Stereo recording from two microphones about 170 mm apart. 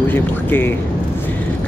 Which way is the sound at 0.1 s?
10° left (ahead or behind).